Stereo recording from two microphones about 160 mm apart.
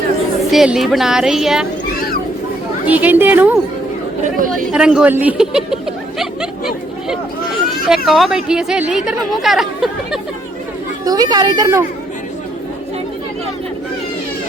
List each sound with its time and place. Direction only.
0.3 s speech: centre (ahead or behind)
2.8 s a woman's voice: 10° right (ahead or behind)
4.7 s speech: 5° right (ahead or behind)
5.1 s a sound: 5° right (ahead or behind)
7.9 s speech: centre (ahead or behind)
11.0 s speech: 25° right (ahead or behind)